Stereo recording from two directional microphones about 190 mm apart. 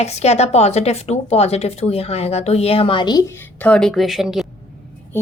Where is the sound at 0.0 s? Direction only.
35° left (ahead or behind).